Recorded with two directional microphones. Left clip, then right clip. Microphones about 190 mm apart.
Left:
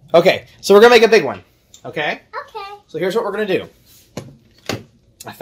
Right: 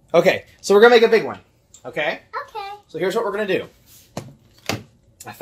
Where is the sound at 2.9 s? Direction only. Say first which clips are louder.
Left 3 dB; 30° left (ahead or behind).